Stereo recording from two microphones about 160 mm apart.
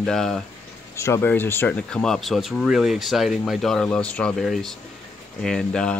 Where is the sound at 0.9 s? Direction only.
15° left (ahead or behind).